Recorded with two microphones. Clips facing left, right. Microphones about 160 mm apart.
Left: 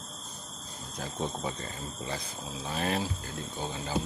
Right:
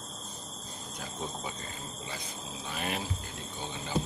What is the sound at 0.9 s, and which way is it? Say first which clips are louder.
Speech: left 5 dB; 30° left (ahead or behind).